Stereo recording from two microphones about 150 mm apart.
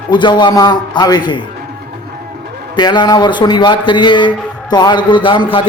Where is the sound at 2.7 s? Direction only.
30° left (ahead or behind).